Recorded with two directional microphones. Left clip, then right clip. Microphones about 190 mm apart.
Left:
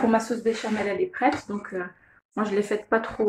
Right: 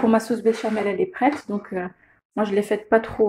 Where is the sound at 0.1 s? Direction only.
35° right (ahead or behind).